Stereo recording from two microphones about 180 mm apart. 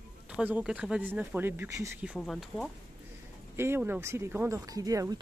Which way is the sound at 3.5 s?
15° right (ahead or behind).